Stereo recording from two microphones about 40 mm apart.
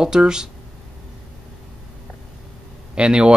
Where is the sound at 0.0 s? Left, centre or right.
Centre.